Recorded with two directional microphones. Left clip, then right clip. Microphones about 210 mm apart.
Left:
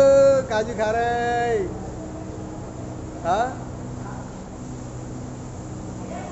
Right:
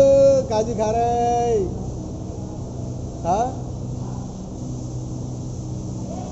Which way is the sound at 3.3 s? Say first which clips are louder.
Right 1 dB; 15° right (ahead or behind).